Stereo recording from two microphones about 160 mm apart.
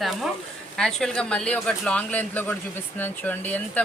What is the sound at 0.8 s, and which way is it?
Speech, 5° left (ahead or behind).